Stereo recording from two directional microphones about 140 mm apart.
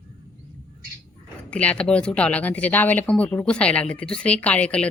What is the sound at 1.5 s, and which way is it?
Speech, 10° left (ahead or behind).